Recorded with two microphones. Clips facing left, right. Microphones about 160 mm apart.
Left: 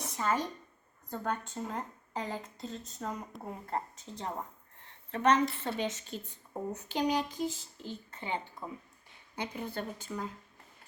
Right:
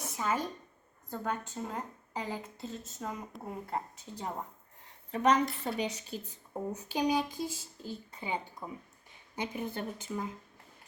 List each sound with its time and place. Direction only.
0.2 s a woman's voice: 5° right (ahead or behind)
5.1 s a sound: 10° right (ahead or behind)
9.3 s speech: 20° right (ahead or behind)